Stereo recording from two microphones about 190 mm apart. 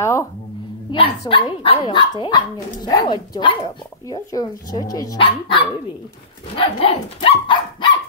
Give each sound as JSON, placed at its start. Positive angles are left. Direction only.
{"t": 0.0, "sound": "speech", "side_deg": 15}